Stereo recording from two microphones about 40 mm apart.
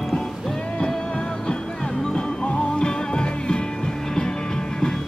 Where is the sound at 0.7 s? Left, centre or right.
Left.